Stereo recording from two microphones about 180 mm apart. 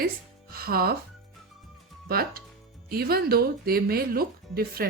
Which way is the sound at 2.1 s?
55° right (ahead or behind).